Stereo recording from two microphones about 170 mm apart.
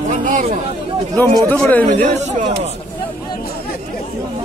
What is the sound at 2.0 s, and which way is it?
Speech, 40° right (ahead or behind).